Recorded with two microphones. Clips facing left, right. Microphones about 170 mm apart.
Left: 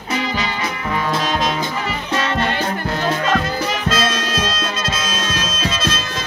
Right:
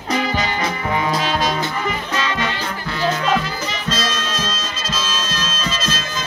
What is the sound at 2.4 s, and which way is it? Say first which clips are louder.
Music: left 4 dB; 55° left (ahead or behind).